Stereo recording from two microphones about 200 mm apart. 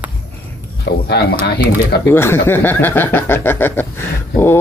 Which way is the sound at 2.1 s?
10° left (ahead or behind).